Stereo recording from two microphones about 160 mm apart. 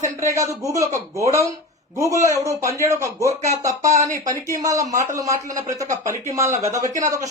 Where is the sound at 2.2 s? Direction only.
20° right (ahead or behind).